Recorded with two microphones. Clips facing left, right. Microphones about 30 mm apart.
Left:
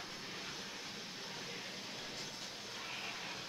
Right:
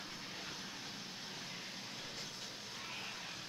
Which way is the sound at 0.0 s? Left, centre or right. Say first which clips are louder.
Left 1 dB; centre.